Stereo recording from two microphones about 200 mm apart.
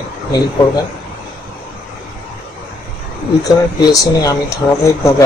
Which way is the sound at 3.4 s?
15° left (ahead or behind).